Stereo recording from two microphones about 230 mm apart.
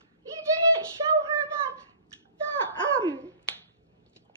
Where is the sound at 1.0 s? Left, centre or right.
Right.